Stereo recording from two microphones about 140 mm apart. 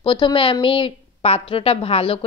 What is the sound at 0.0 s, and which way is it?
A woman's voice, 35° left (ahead or behind).